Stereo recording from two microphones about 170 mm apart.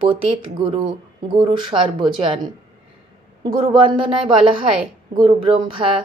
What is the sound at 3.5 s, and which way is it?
Speech, 30° right (ahead or behind).